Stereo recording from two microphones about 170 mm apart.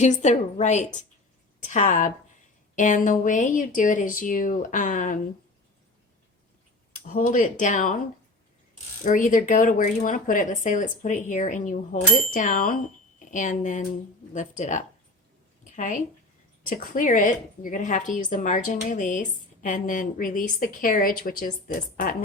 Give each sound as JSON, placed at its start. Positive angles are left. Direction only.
{"t": 0.0, "sound": "a woman's voice", "side_deg": 45}
{"t": 7.0, "sound": "a woman's voice", "side_deg": 45}
{"t": 9.0, "sound": "a woman's voice", "side_deg": 50}